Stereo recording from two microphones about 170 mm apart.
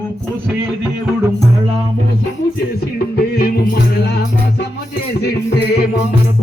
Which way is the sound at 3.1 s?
70° left (ahead or behind).